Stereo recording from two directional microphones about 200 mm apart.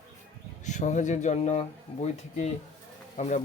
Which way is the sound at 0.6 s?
35° left (ahead or behind).